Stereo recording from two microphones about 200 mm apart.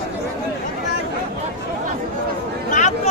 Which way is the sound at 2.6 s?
40° left (ahead or behind).